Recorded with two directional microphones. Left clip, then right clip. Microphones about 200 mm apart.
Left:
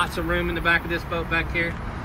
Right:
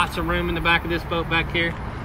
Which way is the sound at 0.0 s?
35° right (ahead or behind).